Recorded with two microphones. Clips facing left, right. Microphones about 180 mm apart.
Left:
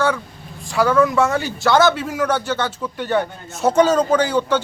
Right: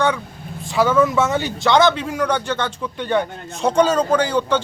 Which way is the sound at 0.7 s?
Centre (ahead or behind).